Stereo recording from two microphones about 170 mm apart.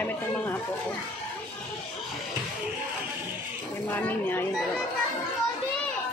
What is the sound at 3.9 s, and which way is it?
Speech, 10° left (ahead or behind).